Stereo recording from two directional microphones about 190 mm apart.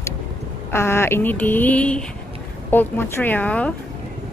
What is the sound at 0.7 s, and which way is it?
A woman's voice, 15° left (ahead or behind).